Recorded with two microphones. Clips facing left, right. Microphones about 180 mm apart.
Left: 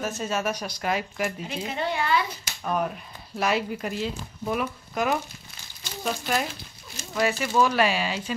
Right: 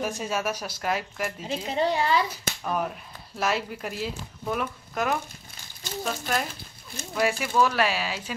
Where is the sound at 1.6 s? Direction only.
35° right (ahead or behind).